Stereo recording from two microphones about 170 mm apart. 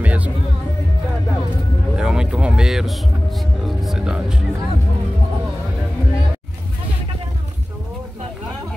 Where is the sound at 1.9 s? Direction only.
5° right (ahead or behind).